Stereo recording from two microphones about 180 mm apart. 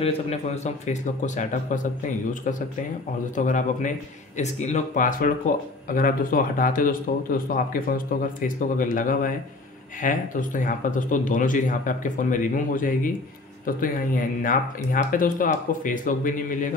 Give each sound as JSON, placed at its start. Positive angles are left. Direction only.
{"t": 0.0, "sound": "speech", "side_deg": 40}